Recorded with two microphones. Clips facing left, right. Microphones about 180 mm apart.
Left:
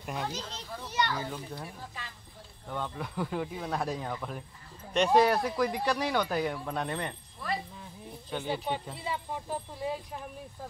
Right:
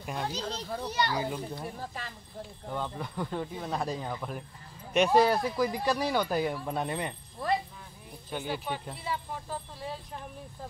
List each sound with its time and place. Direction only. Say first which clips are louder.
0.0 s a child's voice: right 1 dB; centre (ahead or behind)
0.3 s a child's voice: right 5 dB; 35° right (ahead or behind)
1.1 s a child's voice: right 4 dB; 15° right (ahead or behind)
2.7 s speech: even; centre (ahead or behind)
8.5 s speech: left 3 dB; 25° left (ahead or behind)